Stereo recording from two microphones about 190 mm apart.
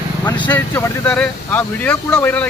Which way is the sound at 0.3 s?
25° left (ahead or behind).